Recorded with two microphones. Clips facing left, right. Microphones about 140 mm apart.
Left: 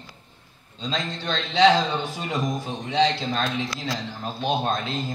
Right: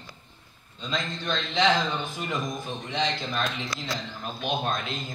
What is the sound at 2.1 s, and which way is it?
A man's voice, 35° left (ahead or behind).